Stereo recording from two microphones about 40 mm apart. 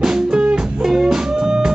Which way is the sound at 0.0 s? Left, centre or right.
Centre.